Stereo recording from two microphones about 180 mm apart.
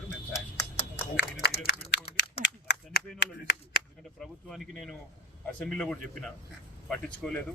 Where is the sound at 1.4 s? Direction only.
70° left (ahead or behind).